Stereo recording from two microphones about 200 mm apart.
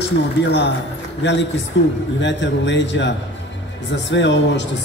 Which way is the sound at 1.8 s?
65° left (ahead or behind).